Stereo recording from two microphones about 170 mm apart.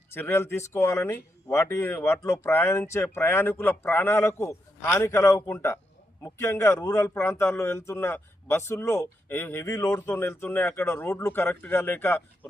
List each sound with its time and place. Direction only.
0.1 s a man's voice: 15° left (ahead or behind)